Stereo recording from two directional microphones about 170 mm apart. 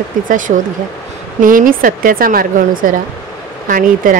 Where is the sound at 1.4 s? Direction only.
55° right (ahead or behind).